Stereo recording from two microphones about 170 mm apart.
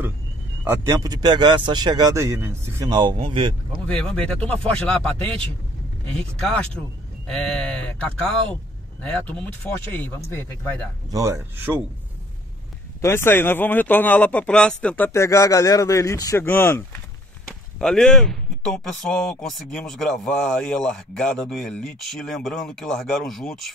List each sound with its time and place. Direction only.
0.7 s a man's voice: 20° right (ahead or behind)
3.0 s a man's voice: 30° right (ahead or behind)
3.8 s speech: 5° left (ahead or behind)
6.1 s speech: 5° left (ahead or behind)
11.1 s speech: 20° right (ahead or behind)
13.0 s speech: 15° left (ahead or behind)